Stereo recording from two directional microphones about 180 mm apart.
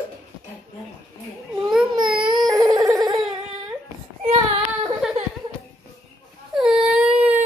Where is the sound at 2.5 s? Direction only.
20° right (ahead or behind).